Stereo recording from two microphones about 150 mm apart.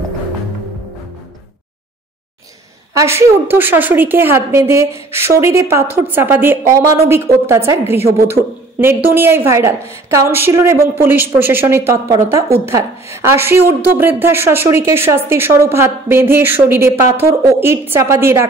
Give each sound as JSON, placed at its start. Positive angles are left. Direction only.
{"t": 2.9, "sound": "a woman's voice", "side_deg": -20}